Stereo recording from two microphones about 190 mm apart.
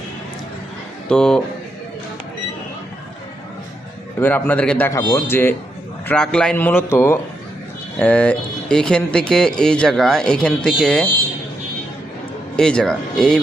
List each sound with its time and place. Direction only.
1.0 s speech: 5° left (ahead or behind)
4.2 s a man's voice: 10° left (ahead or behind)
4.9 s a man's voice: 20° left (ahead or behind)
12.5 s speech: 5° left (ahead or behind)